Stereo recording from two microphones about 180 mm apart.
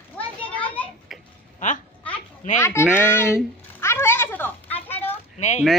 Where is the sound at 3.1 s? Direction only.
15° left (ahead or behind).